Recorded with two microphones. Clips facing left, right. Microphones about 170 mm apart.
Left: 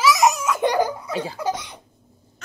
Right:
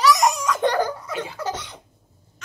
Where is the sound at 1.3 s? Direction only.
10° left (ahead or behind).